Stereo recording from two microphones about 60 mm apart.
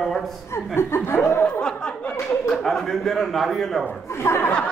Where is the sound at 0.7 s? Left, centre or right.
Left.